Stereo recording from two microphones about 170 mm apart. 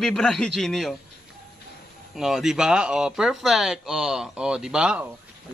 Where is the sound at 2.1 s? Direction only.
Centre (ahead or behind).